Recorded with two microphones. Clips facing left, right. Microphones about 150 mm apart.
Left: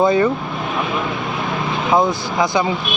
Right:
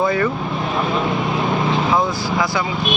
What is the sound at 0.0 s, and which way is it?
Speech, 20° left (ahead or behind).